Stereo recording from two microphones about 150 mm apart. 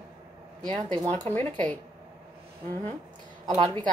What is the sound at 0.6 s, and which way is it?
Speech, 30° right (ahead or behind).